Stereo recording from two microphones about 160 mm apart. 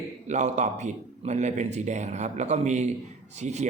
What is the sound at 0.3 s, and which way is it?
A man's voice, 45° right (ahead or behind).